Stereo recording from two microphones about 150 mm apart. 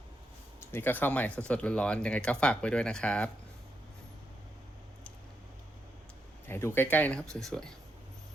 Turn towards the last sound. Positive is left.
turn(degrees=5)  # may be behind; listen again after turning